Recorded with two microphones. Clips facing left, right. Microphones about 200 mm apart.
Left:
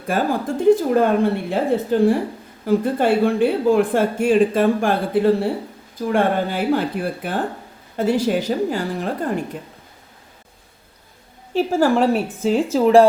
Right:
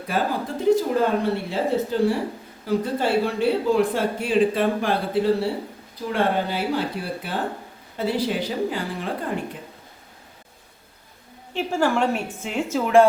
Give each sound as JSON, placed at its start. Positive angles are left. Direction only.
{"t": 0.1, "sound": "speech", "side_deg": 50}
{"t": 11.5, "sound": "a woman's voice", "side_deg": 40}